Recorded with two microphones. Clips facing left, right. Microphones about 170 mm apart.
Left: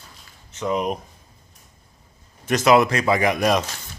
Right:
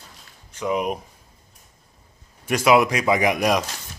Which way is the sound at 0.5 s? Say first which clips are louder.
Even; 10° right (ahead or behind).